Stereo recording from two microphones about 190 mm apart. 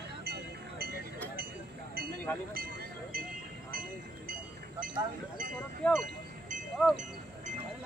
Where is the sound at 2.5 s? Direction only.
50° right (ahead or behind).